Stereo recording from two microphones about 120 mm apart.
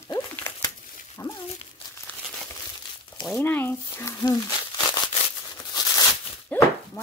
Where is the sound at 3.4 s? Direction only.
20° left (ahead or behind).